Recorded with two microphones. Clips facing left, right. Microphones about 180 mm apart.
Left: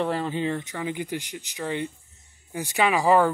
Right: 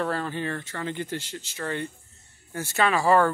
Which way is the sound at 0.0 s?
15° left (ahead or behind).